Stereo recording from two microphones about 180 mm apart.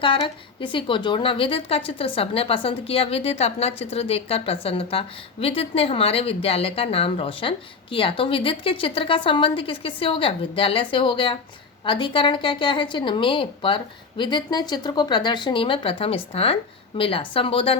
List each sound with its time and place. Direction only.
0.0 s a woman's voice: 30° left (ahead or behind)